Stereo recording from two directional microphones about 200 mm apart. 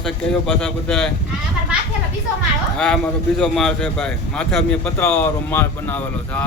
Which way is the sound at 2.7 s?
5° left (ahead or behind).